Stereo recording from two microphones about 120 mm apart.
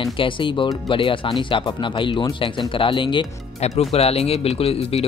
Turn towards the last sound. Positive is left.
turn(degrees=55)  # may be behind; listen again after turning